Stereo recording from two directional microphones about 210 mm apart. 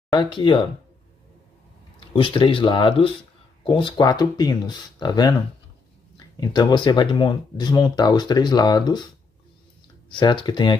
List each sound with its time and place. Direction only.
0.1 s speech: 20° left (ahead or behind)
2.0 s speech: 25° left (ahead or behind)